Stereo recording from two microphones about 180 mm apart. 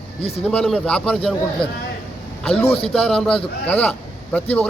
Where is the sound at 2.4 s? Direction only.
5° left (ahead or behind).